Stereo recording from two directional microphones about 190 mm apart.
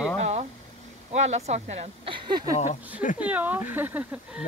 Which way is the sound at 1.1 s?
35° right (ahead or behind).